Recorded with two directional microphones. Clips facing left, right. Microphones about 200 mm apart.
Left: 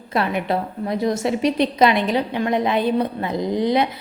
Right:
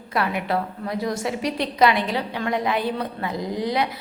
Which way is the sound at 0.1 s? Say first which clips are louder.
Left 3 dB; 25° left (ahead or behind).